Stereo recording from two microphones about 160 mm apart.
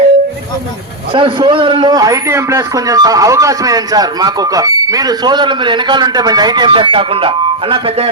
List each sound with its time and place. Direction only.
1.1 s a man's voice: 30° right (ahead or behind)